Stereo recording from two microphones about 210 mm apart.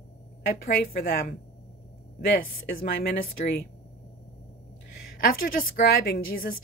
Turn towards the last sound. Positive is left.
turn(degrees=45)  # may be behind; listen again after turning